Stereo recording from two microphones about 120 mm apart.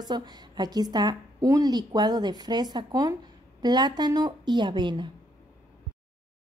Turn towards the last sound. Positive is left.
turn(degrees=-40)  # may be behind; listen again after turning